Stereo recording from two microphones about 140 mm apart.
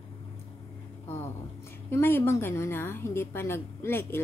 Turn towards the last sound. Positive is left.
turn(degrees=15)  # may be behind; listen again after turning